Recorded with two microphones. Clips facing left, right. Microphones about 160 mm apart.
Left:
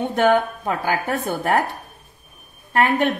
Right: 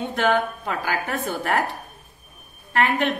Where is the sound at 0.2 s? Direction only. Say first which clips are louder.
Left 4 dB; 45° left (ahead or behind).